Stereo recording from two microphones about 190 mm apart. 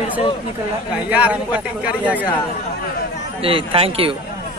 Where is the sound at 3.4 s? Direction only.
30° right (ahead or behind).